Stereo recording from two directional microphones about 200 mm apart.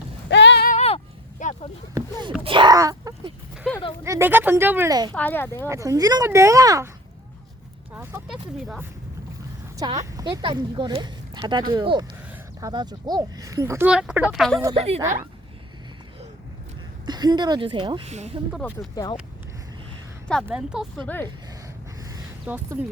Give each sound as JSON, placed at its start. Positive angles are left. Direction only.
{"t": 0.3, "sound": "a sound", "side_deg": 60}
{"t": 0.7, "sound": "a sound", "side_deg": 30}
{"t": 2.0, "sound": "a sound", "side_deg": -20}
{"t": 3.6, "sound": "a sound", "side_deg": 0}
{"t": 4.0, "sound": "speech", "side_deg": -10}
{"t": 5.1, "sound": "speech", "side_deg": 10}
{"t": 5.6, "sound": "speech", "side_deg": -15}
{"t": 7.9, "sound": "speech", "side_deg": -5}
{"t": 9.7, "sound": "a woman's voice", "side_deg": -15}
{"t": 14.8, "sound": "a woman's voice", "side_deg": -30}
{"t": 17.1, "sound": "a woman's voice", "side_deg": -20}
{"t": 18.8, "sound": "speech", "side_deg": 15}
{"t": 20.2, "sound": "speech", "side_deg": 0}
{"t": 22.4, "sound": "speech", "side_deg": -10}